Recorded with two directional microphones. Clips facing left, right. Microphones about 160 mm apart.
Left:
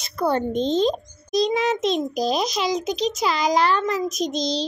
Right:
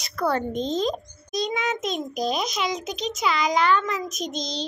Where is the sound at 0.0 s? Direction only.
25° left (ahead or behind).